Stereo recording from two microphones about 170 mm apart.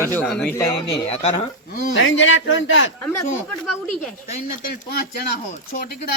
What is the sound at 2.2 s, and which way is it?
Speech, 90° left.